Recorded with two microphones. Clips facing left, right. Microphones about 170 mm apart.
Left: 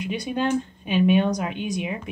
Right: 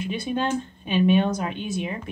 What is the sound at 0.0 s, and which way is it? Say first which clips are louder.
Speech: left 1 dB; 15° left (ahead or behind).